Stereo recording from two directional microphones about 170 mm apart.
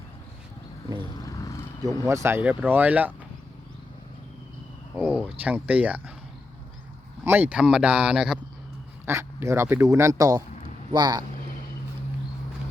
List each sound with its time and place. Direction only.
1.2 s a sound: 20° left (ahead or behind)
2.0 s speech: 15° right (ahead or behind)
4.9 s speech: 5° right (ahead or behind)
7.3 s speech: 10° right (ahead or behind)
9.0 s speech: 15° right (ahead or behind)